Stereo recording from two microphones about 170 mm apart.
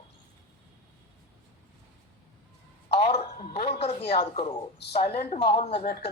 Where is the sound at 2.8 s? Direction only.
35° left (ahead or behind).